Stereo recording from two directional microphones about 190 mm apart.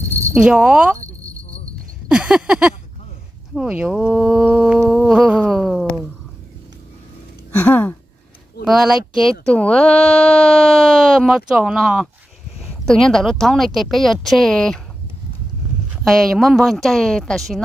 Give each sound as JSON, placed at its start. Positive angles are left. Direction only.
{"t": 0.2, "sound": "speech", "side_deg": -5}
{"t": 2.0, "sound": "a sound", "side_deg": -5}
{"t": 3.5, "sound": "speech", "side_deg": -5}
{"t": 7.5, "sound": "a sound", "side_deg": 10}
{"t": 8.6, "sound": "speech", "side_deg": 0}
{"t": 9.1, "sound": "speech", "side_deg": 25}
{"t": 9.5, "sound": "speech", "side_deg": 5}
{"t": 16.0, "sound": "speech", "side_deg": 0}